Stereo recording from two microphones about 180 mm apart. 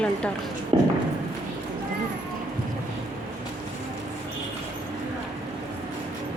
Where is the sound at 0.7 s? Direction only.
30° right (ahead or behind).